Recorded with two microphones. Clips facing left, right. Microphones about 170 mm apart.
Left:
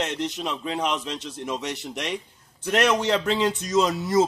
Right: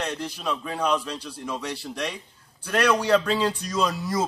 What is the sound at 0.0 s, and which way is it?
Speech, 20° left (ahead or behind).